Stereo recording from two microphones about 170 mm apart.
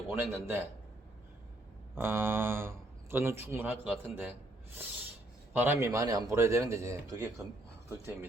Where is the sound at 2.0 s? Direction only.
15° right (ahead or behind).